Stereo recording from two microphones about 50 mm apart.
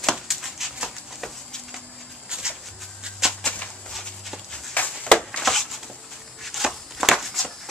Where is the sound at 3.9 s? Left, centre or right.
Centre.